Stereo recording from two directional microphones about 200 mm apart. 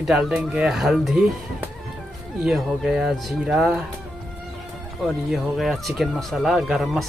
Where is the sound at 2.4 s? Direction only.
Centre (ahead or behind).